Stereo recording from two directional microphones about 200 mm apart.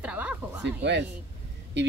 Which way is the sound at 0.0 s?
5° right (ahead or behind).